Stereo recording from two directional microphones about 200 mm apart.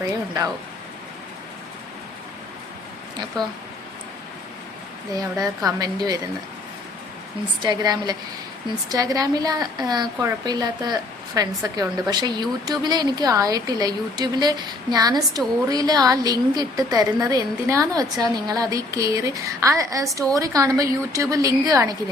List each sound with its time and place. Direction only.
3.3 s a woman's voice: 20° right (ahead or behind)
5.1 s a woman's voice: 20° right (ahead or behind)
7.6 s a woman's voice: 20° right (ahead or behind)